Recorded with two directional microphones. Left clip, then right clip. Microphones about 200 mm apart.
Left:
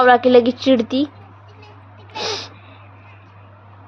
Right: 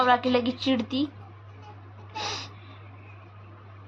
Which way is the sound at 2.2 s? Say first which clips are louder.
Left 8 dB; 25° left (ahead or behind).